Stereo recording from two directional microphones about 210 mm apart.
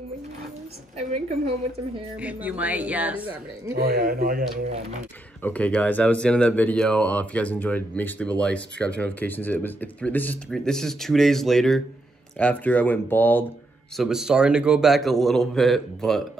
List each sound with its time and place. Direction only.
2.1 s speech: 5° right (ahead or behind)
3.7 s speech: 50° right (ahead or behind)
5.4 s speech: 5° left (ahead or behind)
13.9 s a man's voice: centre (ahead or behind)